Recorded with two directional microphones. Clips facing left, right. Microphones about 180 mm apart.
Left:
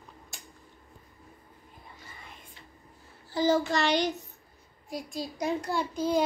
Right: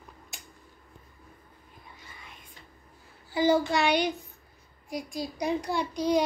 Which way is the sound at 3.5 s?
10° right (ahead or behind).